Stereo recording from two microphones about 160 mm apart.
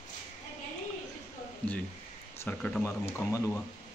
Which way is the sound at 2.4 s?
5° left (ahead or behind).